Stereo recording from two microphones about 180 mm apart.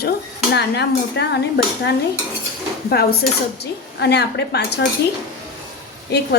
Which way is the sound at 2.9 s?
60° left (ahead or behind).